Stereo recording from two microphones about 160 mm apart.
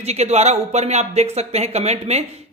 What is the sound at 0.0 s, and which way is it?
A man's voice, 40° right (ahead or behind).